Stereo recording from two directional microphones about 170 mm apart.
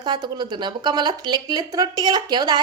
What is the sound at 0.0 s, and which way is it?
Speech, 25° right (ahead or behind).